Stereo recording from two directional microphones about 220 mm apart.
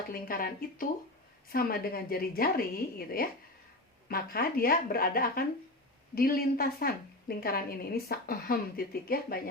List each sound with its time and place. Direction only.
0.1 s a woman's voice: 40° left (ahead or behind)